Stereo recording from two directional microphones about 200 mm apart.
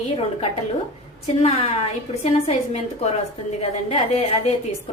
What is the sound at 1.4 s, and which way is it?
Speech, 30° left (ahead or behind).